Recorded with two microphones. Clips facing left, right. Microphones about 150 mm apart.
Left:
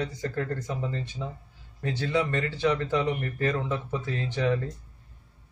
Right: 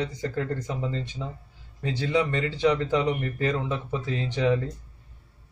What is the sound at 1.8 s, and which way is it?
Speech, 15° right (ahead or behind).